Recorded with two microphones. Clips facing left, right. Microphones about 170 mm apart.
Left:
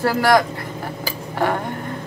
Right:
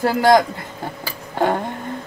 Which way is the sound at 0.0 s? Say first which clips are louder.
Right 2 dB; 20° right (ahead or behind).